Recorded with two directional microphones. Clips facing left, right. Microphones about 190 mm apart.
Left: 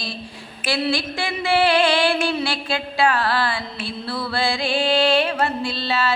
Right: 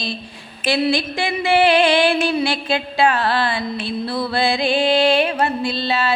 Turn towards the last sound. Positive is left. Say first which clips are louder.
# right 2 dB
turn(degrees=-15)  # may be behind; listen again after turning